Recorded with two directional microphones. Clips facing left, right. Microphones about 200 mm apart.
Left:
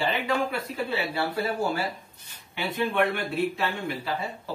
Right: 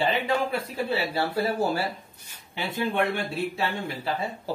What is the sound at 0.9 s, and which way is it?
Speech, 35° right (ahead or behind).